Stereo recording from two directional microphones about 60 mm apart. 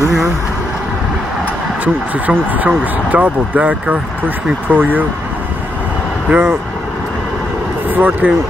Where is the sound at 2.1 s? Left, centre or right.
Right.